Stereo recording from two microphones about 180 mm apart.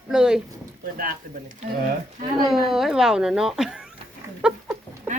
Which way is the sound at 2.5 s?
Centre (ahead or behind).